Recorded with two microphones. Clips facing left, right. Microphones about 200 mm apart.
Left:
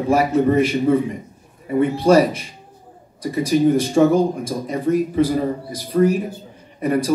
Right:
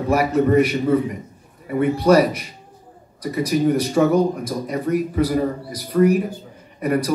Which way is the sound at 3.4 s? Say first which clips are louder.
Left 3 dB; 25° left (ahead or behind).